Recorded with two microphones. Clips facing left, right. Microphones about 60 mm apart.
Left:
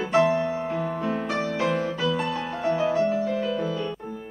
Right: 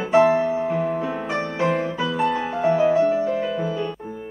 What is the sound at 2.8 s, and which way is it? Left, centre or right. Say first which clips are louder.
Music: right 5 dB; centre.